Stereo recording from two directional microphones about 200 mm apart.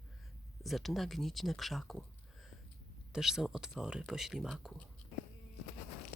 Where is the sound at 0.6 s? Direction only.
Centre (ahead or behind).